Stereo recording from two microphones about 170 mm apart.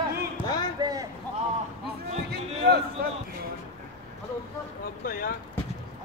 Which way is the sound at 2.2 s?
70° right (ahead or behind).